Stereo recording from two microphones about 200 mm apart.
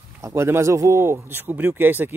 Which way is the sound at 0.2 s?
15° right (ahead or behind).